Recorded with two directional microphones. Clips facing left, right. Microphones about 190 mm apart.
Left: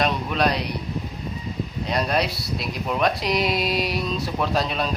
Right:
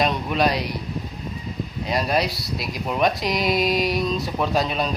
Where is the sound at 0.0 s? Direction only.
Centre (ahead or behind).